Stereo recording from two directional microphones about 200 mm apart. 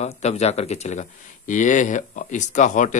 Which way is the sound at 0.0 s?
35° left (ahead or behind).